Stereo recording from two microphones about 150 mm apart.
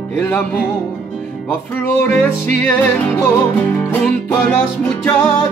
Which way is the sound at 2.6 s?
15° left (ahead or behind).